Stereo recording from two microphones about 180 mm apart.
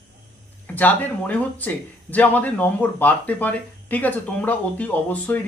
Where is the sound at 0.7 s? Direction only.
10° left (ahead or behind).